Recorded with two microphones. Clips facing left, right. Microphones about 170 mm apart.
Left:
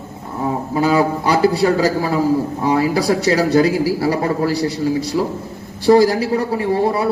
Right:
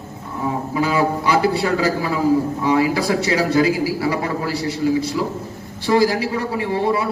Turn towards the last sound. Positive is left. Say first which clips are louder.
# left 3 dB
turn(degrees=40)  # may be behind; listen again after turning